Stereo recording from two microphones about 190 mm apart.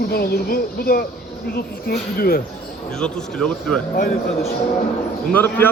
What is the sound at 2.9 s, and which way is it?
Speech, 5° left (ahead or behind).